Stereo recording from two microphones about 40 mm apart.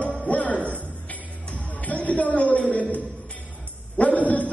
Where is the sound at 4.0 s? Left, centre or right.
Left.